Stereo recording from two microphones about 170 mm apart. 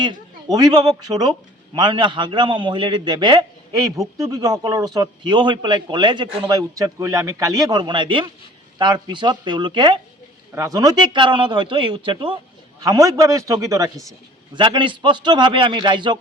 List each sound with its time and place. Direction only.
0.0 s a man's voice: 25° right (ahead or behind)